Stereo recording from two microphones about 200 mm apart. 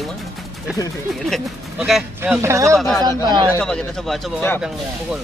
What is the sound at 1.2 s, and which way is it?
Speech, centre (ahead or behind).